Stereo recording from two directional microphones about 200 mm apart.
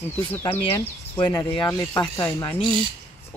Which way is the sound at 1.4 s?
10° left (ahead or behind).